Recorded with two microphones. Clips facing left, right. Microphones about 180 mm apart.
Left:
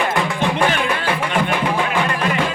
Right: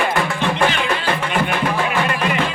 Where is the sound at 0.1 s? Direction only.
15° left (ahead or behind).